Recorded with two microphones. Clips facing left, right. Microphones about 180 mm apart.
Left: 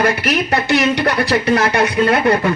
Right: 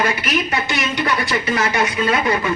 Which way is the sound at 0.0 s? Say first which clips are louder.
Left 4 dB; 65° left (ahead or behind).